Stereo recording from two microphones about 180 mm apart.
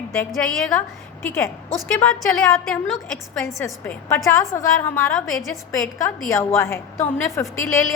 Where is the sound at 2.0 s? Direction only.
5° left (ahead or behind).